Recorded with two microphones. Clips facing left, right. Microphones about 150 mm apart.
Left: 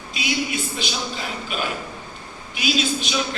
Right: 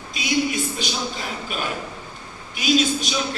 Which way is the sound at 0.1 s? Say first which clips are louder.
Right 3 dB; 40° right (ahead or behind).